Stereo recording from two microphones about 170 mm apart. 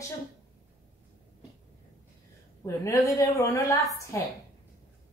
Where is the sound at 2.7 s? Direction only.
15° left (ahead or behind).